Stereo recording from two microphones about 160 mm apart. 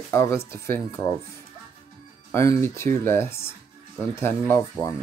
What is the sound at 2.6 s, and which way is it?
Speech, 15° left (ahead or behind).